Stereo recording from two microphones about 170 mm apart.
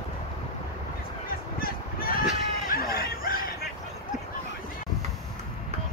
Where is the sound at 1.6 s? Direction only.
60° left (ahead or behind).